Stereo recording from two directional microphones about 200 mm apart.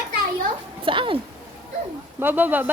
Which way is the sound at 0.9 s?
25° right (ahead or behind).